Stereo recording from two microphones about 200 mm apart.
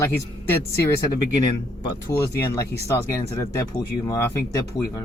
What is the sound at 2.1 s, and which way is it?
Speech, 15° left (ahead or behind).